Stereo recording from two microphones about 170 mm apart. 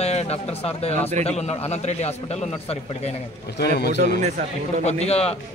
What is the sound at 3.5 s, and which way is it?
Speech, 70° left (ahead or behind).